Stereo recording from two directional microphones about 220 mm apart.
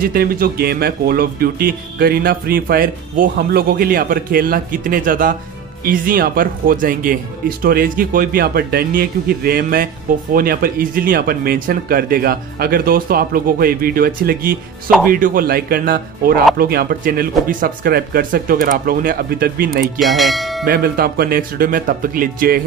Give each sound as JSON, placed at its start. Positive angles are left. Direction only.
{"t": 0.0, "sound": "speech", "side_deg": -40}
{"t": 20.0, "sound": "speech", "side_deg": 0}
{"t": 20.6, "sound": "speech", "side_deg": -40}